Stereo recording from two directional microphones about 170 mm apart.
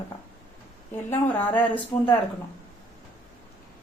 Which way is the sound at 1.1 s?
10° left (ahead or behind).